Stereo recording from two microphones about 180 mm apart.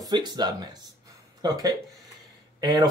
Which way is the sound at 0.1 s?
25° right (ahead or behind).